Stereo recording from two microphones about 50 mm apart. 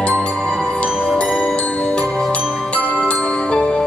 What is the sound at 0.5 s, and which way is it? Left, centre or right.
Music, centre.